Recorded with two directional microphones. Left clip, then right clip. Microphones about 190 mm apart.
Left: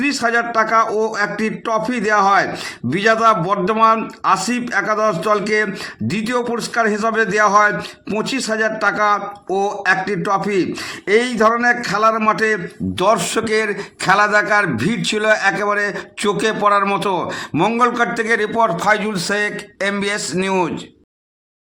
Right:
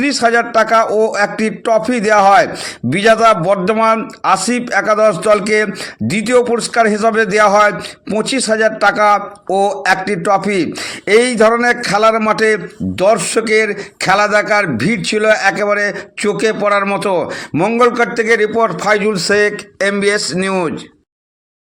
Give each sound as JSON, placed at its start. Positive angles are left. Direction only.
{"t": 0.0, "sound": "a man's voice", "side_deg": -15}
{"t": 13.0, "sound": "a man's voice", "side_deg": -5}